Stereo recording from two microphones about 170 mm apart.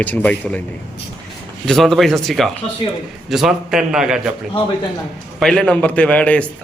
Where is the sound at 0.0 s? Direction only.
10° left (ahead or behind).